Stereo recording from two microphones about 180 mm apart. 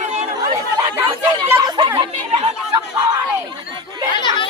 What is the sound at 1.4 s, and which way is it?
Speech, 20° right (ahead or behind).